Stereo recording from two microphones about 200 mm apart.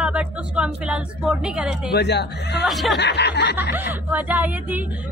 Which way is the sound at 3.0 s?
60° left (ahead or behind).